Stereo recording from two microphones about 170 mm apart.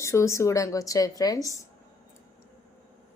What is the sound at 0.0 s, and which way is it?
Speech, 15° left (ahead or behind).